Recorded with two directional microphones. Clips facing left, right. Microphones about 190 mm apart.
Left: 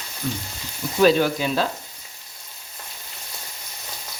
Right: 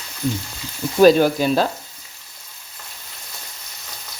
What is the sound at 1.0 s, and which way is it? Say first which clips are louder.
Speech: right 5 dB; 40° right (ahead or behind).